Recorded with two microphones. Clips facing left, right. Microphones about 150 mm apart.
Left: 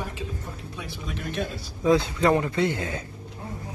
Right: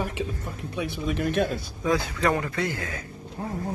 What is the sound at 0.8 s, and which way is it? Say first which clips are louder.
Speech: right 10 dB; 60° right (ahead or behind).